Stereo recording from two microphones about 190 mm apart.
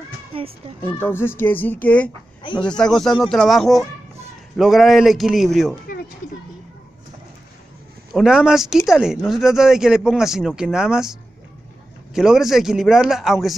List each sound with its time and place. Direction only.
0.3 s a child's voice: 30° right (ahead or behind)
0.8 s speech: 10° left (ahead or behind)
8.1 s speech: 5° right (ahead or behind)